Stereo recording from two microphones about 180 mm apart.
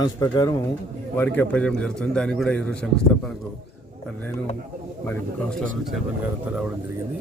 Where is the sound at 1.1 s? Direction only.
10° left (ahead or behind).